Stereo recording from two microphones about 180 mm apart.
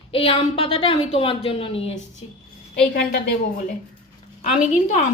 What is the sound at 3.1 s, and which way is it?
A woman's voice, 50° left (ahead or behind).